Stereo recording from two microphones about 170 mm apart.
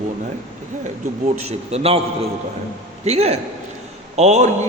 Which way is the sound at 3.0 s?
40° right (ahead or behind).